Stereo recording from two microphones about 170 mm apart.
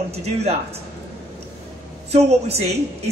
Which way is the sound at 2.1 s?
40° right (ahead or behind).